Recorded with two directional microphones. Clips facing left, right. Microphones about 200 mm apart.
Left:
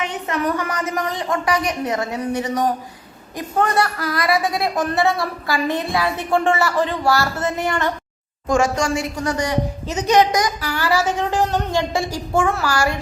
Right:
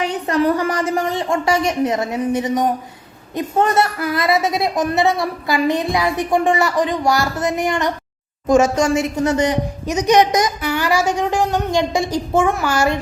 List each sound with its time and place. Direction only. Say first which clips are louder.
0.0 s a woman's voice: right 5 dB; 35° right (ahead or behind)